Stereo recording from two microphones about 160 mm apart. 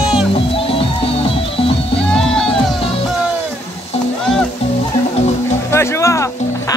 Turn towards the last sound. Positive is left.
turn(degrees=20)  # may be behind; listen again after turning